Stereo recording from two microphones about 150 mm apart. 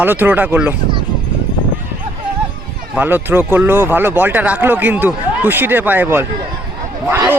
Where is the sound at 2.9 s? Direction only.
10° right (ahead or behind).